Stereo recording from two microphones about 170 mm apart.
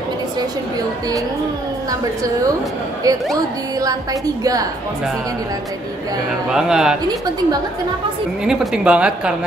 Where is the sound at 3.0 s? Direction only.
20° right (ahead or behind).